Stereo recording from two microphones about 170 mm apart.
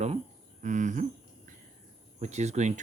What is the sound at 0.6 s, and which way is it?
Speech, 45° right (ahead or behind).